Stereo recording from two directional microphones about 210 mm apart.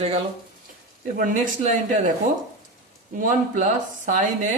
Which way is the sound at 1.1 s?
40° right (ahead or behind).